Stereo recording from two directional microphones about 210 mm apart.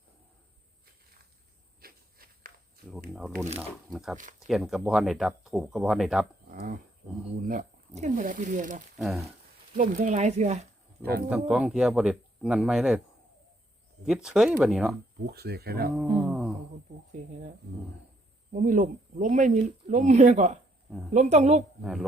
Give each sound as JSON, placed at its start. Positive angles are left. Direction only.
{"t": 1.8, "sound": "walk", "side_deg": -45}
{"t": 3.1, "sound": "speech", "side_deg": 0}
{"t": 6.5, "sound": "a sound", "side_deg": -40}
{"t": 7.4, "sound": "speech", "side_deg": -35}
{"t": 9.0, "sound": "speech", "side_deg": 0}
{"t": 9.7, "sound": "speech", "side_deg": -40}
{"t": 11.3, "sound": "speech", "side_deg": -5}
{"t": 14.1, "sound": "speech", "side_deg": -5}
{"t": 15.3, "sound": "speech", "side_deg": -50}
{"t": 16.0, "sound": "a sound", "side_deg": -5}
{"t": 18.5, "sound": "speech", "side_deg": -35}